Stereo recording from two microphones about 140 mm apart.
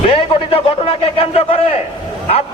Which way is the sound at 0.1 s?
40° left (ahead or behind).